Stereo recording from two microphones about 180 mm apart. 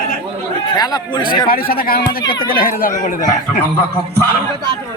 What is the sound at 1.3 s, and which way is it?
Speech, 55° left (ahead or behind).